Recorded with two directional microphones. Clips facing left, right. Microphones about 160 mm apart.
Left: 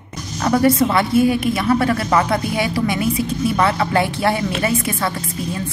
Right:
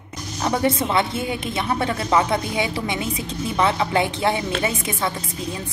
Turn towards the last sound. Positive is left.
turn(degrees=-20)  # may be behind; listen again after turning